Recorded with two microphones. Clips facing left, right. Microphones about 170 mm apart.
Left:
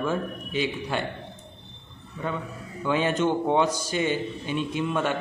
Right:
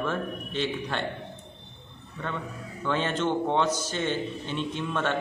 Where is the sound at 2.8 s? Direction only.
10° left (ahead or behind).